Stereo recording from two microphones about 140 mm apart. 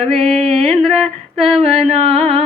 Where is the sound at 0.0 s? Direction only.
50° right (ahead or behind).